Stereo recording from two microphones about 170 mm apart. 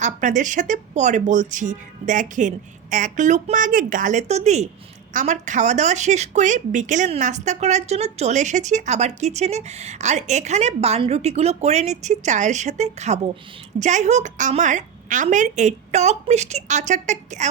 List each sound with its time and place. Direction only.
0.0 s speech: 45° right (ahead or behind)